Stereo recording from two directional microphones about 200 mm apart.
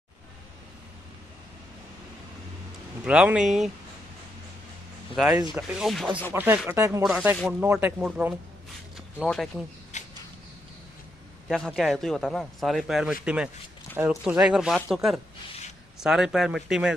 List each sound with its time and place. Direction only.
3.0 s a man's voice: 5° right (ahead or behind)
5.1 s a man's voice: 5° right (ahead or behind)
8.9 s zipper: centre (ahead or behind)
9.9 s a sound: 35° left (ahead or behind)
11.4 s a man's voice: centre (ahead or behind)